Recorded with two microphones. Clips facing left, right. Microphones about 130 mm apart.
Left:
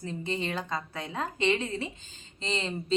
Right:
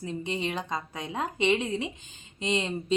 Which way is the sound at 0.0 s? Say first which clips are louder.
Right 1 dB; 15° right (ahead or behind).